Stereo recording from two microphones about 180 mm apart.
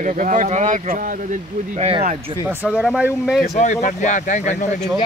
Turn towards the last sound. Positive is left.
turn(degrees=40)  # may be behind; listen again after turning